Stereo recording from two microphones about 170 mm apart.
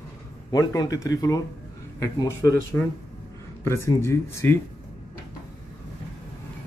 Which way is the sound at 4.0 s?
15° left (ahead or behind).